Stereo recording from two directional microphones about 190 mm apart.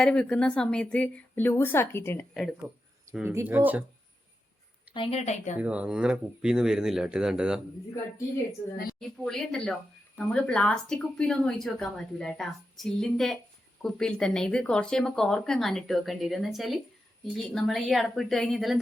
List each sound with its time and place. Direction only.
0.0 s speech: 5° left (ahead or behind)
3.2 s speech: 10° right (ahead or behind)
4.9 s a woman's voice: 35° left (ahead or behind)
5.5 s speech: 5° right (ahead or behind)
9.0 s speech: centre (ahead or behind)